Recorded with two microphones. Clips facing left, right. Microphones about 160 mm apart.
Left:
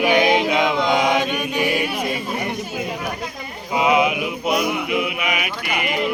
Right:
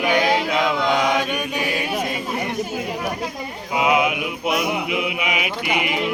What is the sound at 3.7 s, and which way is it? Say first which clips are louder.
Mantra: left 1 dB; 5° right (ahead or behind).